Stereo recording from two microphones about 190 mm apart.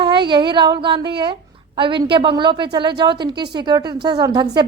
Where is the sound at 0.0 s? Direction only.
25° right (ahead or behind).